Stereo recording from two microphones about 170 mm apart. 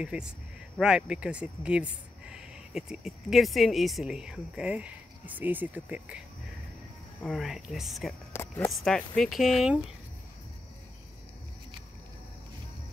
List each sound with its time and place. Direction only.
0.0 s speech: 5° right (ahead or behind)
8.3 s a sound: 15° left (ahead or behind)
8.7 s speech: 5° left (ahead or behind)